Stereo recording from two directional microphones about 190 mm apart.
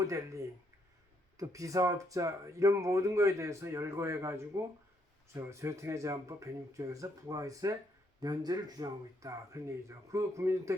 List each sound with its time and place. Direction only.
0.1 s speech: 15° right (ahead or behind)